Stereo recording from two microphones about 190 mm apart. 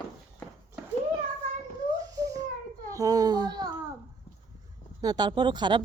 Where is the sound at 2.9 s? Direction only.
20° right (ahead or behind).